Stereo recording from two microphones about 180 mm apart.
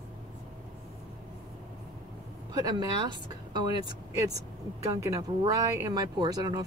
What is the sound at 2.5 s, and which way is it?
Speech, 20° right (ahead or behind).